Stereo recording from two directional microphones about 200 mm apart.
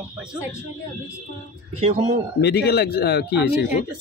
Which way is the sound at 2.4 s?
55° left (ahead or behind).